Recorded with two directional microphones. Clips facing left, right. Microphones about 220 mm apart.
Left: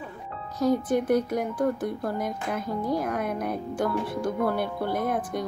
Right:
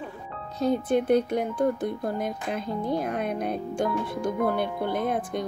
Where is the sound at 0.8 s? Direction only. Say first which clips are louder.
Right 1 dB; 25° right (ahead or behind).